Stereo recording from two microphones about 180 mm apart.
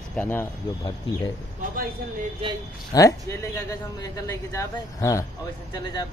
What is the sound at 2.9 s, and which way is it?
Speech, 20° left (ahead or behind).